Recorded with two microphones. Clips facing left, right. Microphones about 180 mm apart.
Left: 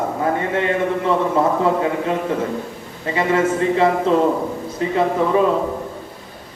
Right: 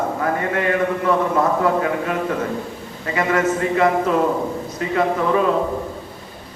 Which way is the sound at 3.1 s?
25° left (ahead or behind).